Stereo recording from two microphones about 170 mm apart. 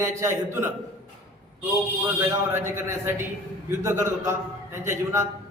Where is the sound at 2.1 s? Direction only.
15° right (ahead or behind).